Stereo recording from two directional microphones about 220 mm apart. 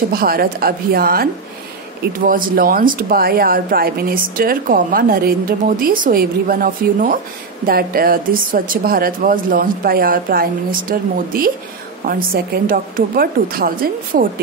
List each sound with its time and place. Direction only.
0.1 s a woman's voice: 40° right (ahead or behind)
12.6 s speech: 40° right (ahead or behind)